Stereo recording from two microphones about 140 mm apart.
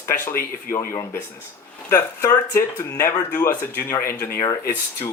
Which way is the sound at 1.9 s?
20° left (ahead or behind).